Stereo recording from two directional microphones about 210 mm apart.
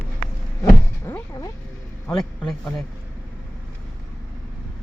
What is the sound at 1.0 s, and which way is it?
A man's voice, 10° left (ahead or behind).